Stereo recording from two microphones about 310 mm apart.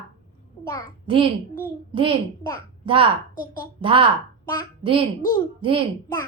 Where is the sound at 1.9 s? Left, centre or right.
Centre.